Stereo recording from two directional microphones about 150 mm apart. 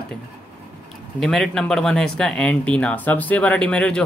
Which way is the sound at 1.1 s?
Centre (ahead or behind).